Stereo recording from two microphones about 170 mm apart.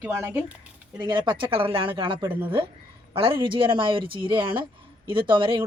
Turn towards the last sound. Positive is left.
turn(degrees=-30)  # may be behind; listen again after turning